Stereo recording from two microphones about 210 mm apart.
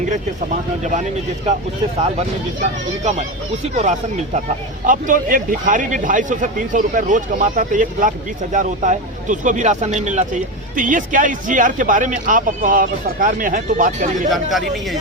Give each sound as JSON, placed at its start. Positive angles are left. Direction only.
{"t": 3.8, "sound": "speech", "side_deg": -35}